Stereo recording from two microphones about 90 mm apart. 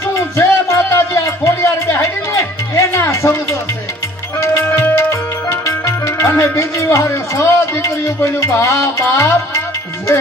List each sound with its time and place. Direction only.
0.0 s music: 30° left (ahead or behind)